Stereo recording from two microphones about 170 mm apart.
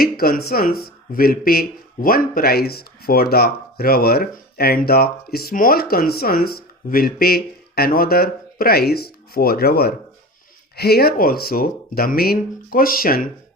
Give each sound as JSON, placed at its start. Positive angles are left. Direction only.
{"t": 0.0, "sound": "speech", "side_deg": 60}